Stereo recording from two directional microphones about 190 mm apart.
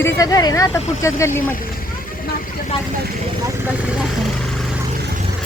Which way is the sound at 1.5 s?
50° left (ahead or behind).